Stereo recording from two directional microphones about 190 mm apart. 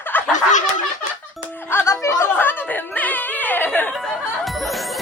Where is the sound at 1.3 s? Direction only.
10° left (ahead or behind).